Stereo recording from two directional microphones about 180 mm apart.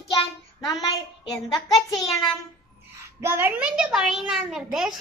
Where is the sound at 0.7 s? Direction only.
20° left (ahead or behind).